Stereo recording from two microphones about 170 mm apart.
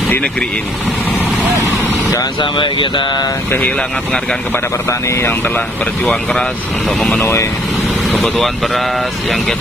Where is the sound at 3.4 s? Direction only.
10° left (ahead or behind).